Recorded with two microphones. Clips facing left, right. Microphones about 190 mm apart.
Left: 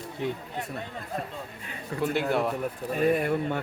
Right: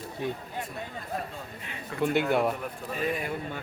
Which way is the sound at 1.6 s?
40° left (ahead or behind).